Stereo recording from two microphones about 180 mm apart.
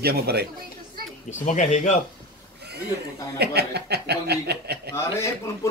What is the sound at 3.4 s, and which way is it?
Speech, 65° right (ahead or behind).